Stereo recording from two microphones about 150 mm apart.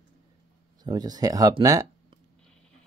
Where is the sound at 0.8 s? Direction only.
25° right (ahead or behind).